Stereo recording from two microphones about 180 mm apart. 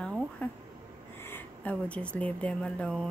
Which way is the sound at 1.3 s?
10° left (ahead or behind).